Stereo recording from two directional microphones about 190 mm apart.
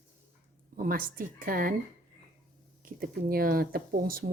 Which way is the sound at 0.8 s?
50° right (ahead or behind).